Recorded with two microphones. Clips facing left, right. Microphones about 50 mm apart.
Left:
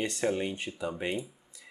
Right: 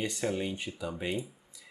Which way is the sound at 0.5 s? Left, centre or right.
Left.